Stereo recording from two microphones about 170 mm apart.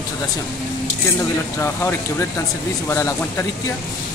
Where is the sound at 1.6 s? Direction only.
15° left (ahead or behind).